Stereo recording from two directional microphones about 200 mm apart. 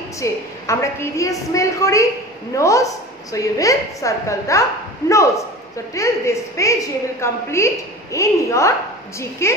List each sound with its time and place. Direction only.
0.2 s a woman's voice: 15° left (ahead or behind)